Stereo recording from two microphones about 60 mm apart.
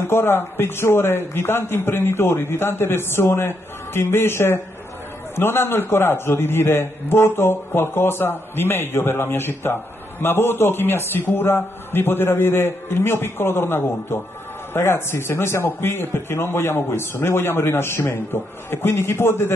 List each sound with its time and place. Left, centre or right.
0.1 s a man's voice: left